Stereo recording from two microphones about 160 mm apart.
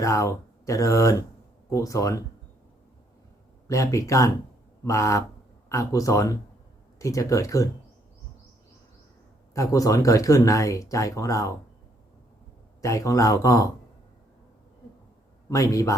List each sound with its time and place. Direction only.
0.0 s speech: 20° left (ahead or behind)
3.7 s speech: 20° left (ahead or behind)
9.6 s speech: 20° left (ahead or behind)
12.8 s speech: 20° left (ahead or behind)
15.4 s speech: 20° left (ahead or behind)